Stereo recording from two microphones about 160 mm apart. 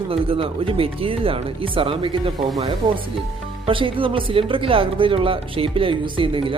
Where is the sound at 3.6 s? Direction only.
35° right (ahead or behind).